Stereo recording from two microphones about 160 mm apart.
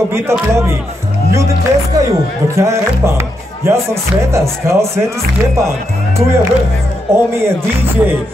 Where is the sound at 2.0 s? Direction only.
20° right (ahead or behind).